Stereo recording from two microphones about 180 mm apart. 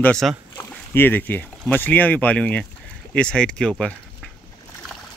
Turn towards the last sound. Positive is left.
turn(degrees=5)  # may be behind; listen again after turning